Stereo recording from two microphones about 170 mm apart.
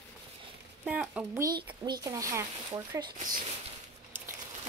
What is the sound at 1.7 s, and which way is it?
A woman's voice, 25° right (ahead or behind).